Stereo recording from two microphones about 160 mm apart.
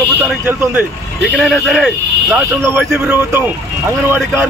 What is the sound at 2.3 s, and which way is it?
A man's voice, 10° right (ahead or behind).